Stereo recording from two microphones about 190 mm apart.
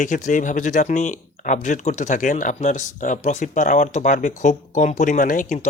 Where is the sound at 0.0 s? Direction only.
40° left (ahead or behind).